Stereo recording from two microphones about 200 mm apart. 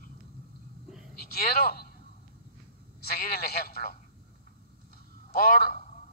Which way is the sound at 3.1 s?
50° left (ahead or behind).